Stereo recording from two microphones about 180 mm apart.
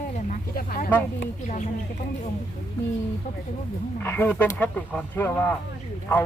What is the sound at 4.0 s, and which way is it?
Speech, 10° left (ahead or behind).